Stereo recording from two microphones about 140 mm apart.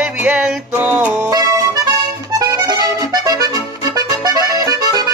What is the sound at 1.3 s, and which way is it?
Accordion, 25° right (ahead or behind).